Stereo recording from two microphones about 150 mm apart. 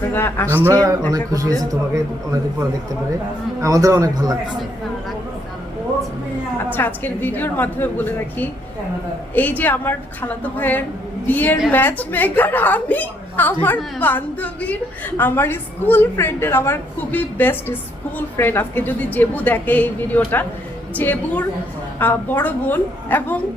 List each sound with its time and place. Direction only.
0.1 s a woman's voice: 15° left (ahead or behind)
0.5 s speech: 15° right (ahead or behind)
1.3 s a man's voice: 25° right (ahead or behind)
3.6 s a man's voice: 20° right (ahead or behind)
6.7 s a woman's voice: 15° left (ahead or behind)